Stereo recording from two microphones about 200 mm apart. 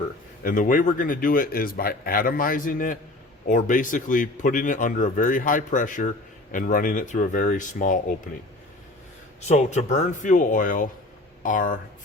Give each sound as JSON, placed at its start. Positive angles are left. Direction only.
{"t": 0.4, "sound": "speech", "side_deg": 40}
{"t": 9.5, "sound": "speech", "side_deg": 35}